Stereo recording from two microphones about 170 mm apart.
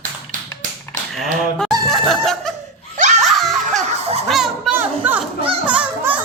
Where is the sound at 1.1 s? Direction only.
5° left (ahead or behind).